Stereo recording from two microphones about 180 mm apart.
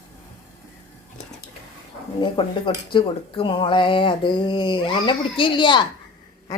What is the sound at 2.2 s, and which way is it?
A woman's voice, 25° left (ahead or behind).